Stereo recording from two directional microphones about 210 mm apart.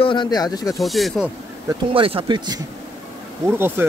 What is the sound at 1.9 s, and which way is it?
Speech, 25° right (ahead or behind).